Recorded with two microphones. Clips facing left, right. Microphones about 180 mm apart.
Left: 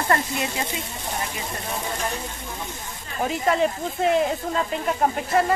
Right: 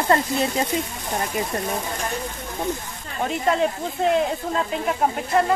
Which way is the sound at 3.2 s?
Centre (ahead or behind).